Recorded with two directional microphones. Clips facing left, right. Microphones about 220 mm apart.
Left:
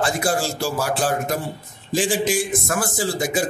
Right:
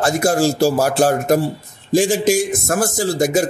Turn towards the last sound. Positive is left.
turn(degrees=-40)  # may be behind; listen again after turning